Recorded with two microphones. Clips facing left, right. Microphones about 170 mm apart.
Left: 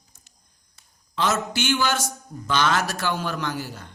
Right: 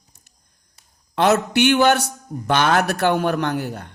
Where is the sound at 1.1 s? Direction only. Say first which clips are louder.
Right 8 dB; 65° right (ahead or behind).